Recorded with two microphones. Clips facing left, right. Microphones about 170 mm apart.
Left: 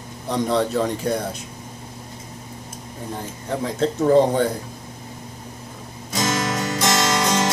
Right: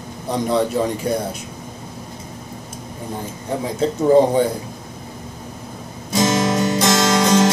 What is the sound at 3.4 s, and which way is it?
Speech, 10° right (ahead or behind).